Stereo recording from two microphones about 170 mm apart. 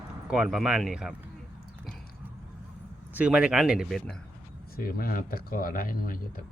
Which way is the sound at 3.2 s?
5° right (ahead or behind).